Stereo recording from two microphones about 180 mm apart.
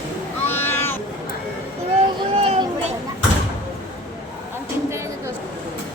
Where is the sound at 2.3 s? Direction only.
30° right (ahead or behind).